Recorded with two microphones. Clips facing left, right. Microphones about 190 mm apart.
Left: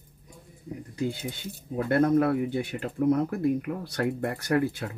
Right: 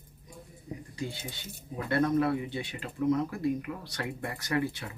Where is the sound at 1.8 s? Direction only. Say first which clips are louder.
Left 5 dB; 55° left (ahead or behind).